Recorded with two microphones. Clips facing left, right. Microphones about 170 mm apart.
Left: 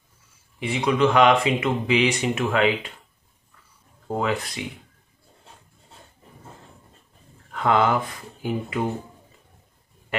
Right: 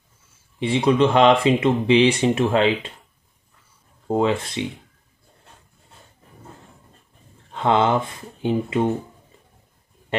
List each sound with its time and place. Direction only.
0.6 s speech: 30° right (ahead or behind)
4.1 s speech: 25° right (ahead or behind)
7.5 s speech: 25° right (ahead or behind)